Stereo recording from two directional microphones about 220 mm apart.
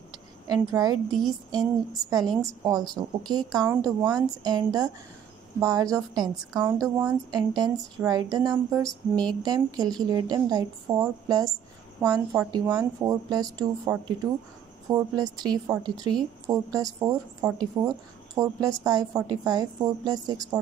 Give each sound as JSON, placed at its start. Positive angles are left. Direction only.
{"t": 0.5, "sound": "speech", "side_deg": -15}
{"t": 9.1, "sound": "a sound", "side_deg": 5}
{"t": 9.4, "sound": "a woman's voice", "side_deg": -20}